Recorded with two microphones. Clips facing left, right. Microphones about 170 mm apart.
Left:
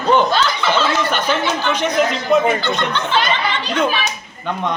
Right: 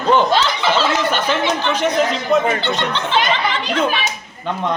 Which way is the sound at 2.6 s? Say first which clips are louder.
Even; 25° right (ahead or behind).